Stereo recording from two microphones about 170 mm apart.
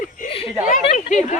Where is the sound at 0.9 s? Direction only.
45° left (ahead or behind).